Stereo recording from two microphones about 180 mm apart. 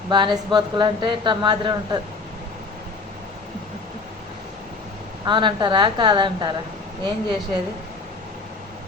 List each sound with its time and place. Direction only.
0.1 s a woman's voice: 25° right (ahead or behind)
5.2 s a woman's voice: 25° right (ahead or behind)